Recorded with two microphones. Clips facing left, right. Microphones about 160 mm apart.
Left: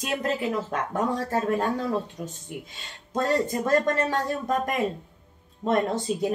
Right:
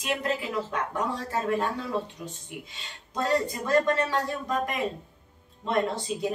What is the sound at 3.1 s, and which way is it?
Speech, 45° left (ahead or behind).